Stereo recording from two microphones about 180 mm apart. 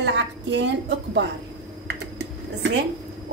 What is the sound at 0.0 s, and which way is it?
A woman's voice, 75° right (ahead or behind).